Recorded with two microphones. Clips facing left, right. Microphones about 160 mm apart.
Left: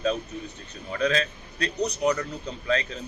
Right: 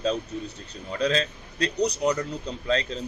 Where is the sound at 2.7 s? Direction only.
30° right (ahead or behind).